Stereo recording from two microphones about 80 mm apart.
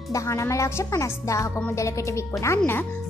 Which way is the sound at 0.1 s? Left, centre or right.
Left.